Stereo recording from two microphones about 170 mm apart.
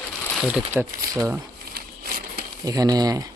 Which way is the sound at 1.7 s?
60° right (ahead or behind).